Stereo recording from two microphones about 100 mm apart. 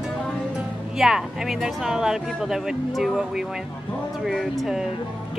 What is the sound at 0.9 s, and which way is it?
Speech, 5° right (ahead or behind).